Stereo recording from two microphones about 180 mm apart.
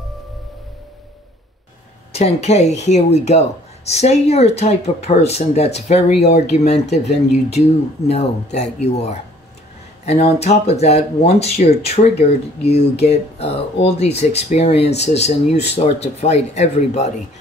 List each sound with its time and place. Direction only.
2.1 s speech: 35° left (ahead or behind)
8.1 s speech: 35° left (ahead or behind)